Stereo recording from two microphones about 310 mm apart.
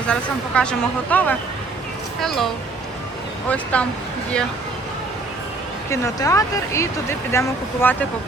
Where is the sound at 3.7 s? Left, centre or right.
Centre.